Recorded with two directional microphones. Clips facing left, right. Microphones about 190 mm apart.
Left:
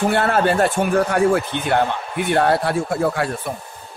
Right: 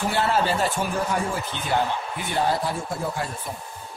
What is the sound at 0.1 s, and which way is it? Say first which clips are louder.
A man's voice: left 5 dB; 55° left (ahead or behind).